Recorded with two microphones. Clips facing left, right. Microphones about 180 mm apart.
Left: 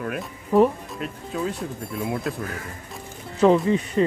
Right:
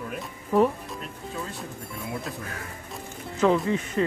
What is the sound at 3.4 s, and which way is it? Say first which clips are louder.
Speech: left 5 dB; 25° left (ahead or behind).